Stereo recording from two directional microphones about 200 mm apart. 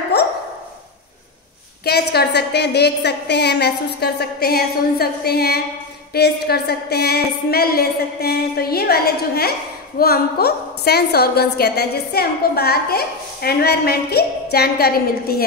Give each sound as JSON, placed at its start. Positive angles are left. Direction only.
{"t": 1.9, "sound": "a woman's voice", "side_deg": 55}